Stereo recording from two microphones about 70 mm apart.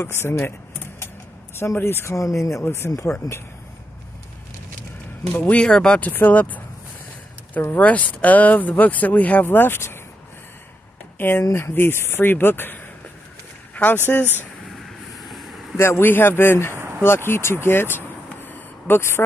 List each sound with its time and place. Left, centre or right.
0.1 s speech: left
1.6 s speech: left
2.1 s speech: left
2.6 s speech: left
3.2 s speech: left
5.3 s speech: centre
5.9 s speech: left
11.1 s speech: left
15.1 s vehicle: centre
15.8 s speech: left